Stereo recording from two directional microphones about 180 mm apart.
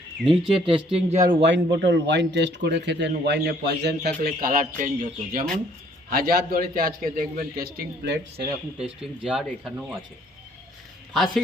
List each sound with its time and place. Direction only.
0.2 s speech: centre (ahead or behind)
0.5 s speech: 30° right (ahead or behind)
1.4 s a man's voice: 80° right
8.8 s speech: 5° right (ahead or behind)